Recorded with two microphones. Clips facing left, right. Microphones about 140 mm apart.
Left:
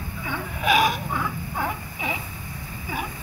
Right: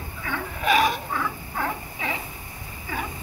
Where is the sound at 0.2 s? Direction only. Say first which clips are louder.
Even; 10° left (ahead or behind).